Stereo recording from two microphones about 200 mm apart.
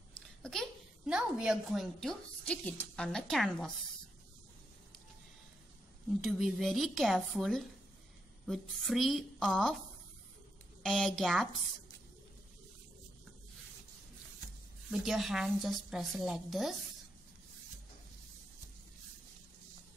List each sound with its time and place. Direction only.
0.4 s a woman's voice: centre (ahead or behind)
6.4 s a woman's voice: centre (ahead or behind)
10.8 s a woman's voice: centre (ahead or behind)
14.9 s a woman's voice: centre (ahead or behind)